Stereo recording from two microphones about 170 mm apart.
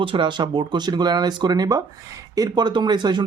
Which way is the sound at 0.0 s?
30° right (ahead or behind).